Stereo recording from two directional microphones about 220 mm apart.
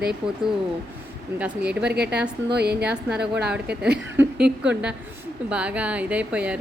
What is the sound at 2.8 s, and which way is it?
A woman's voice, 5° right (ahead or behind).